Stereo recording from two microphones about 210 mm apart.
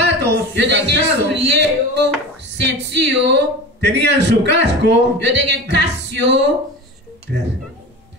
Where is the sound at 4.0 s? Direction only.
55° right (ahead or behind).